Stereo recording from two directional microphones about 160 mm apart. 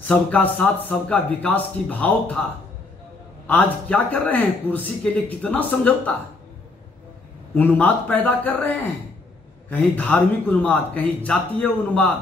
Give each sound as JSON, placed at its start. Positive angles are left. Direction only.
{"t": 0.1, "sound": "speech", "side_deg": 10}
{"t": 3.4, "sound": "speech", "side_deg": 10}
{"t": 7.5, "sound": "speech", "side_deg": 10}